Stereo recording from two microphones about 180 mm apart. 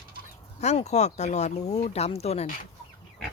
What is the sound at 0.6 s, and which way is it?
Speech, 40° left (ahead or behind).